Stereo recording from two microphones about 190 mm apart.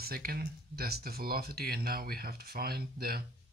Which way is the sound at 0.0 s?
50° right (ahead or behind).